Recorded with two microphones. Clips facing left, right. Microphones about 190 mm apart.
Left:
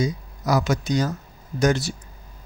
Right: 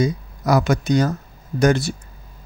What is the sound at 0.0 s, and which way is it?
Speech, 60° right (ahead or behind).